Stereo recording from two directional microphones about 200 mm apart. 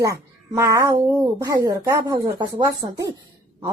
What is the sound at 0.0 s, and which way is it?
A child's voice, 15° right (ahead or behind).